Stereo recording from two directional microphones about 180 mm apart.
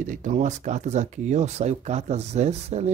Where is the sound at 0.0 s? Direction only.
45° right (ahead or behind).